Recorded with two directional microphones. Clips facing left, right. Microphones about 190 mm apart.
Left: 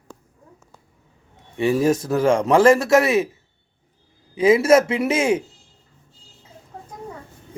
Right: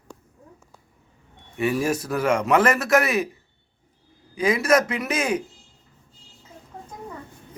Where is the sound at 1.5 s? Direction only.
25° left (ahead or behind).